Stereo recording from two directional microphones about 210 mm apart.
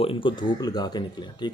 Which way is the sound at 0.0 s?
25° left (ahead or behind).